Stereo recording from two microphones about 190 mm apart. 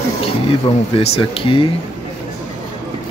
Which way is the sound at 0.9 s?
30° left (ahead or behind).